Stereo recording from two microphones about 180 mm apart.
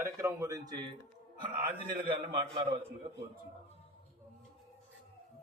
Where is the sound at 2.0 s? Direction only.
30° right (ahead or behind).